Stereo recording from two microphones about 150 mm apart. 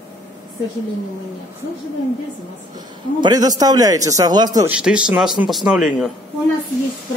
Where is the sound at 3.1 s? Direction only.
25° right (ahead or behind).